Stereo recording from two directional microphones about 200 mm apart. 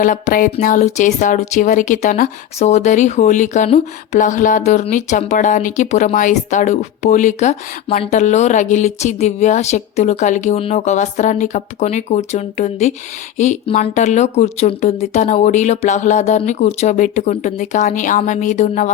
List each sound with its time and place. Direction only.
0.0 s speech: 40° left (ahead or behind)